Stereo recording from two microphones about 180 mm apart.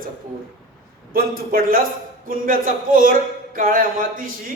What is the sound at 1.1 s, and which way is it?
A man's voice, 55° right (ahead or behind).